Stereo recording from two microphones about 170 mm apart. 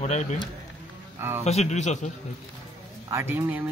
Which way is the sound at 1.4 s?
40° left (ahead or behind).